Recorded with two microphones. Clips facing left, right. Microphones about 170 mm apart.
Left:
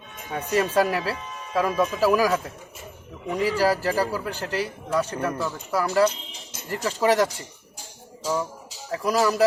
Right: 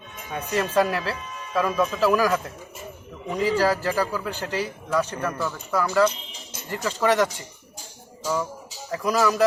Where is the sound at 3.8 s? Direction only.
40° left (ahead or behind).